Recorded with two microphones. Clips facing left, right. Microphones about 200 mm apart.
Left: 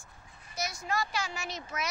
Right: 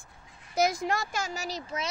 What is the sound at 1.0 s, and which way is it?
Speech, 45° right (ahead or behind).